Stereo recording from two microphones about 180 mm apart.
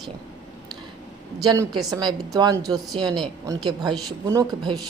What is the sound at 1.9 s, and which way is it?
Speech, 20° right (ahead or behind).